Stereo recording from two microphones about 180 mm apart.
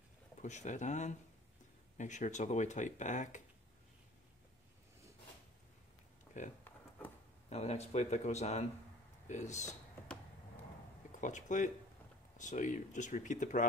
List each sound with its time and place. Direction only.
0.4 s speech: 40° left (ahead or behind)
6.4 s speech: 45° left (ahead or behind)
11.1 s speech: 45° left (ahead or behind)